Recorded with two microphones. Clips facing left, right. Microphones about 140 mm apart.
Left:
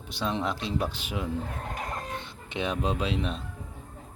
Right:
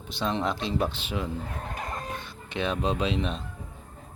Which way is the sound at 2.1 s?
20° left (ahead or behind).